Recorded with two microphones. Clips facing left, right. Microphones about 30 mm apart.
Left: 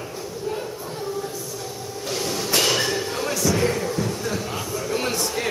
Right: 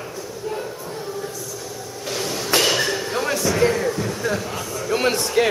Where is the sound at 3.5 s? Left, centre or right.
Centre.